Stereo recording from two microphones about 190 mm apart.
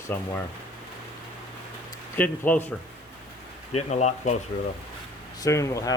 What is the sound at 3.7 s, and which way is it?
Speech, 35° left (ahead or behind).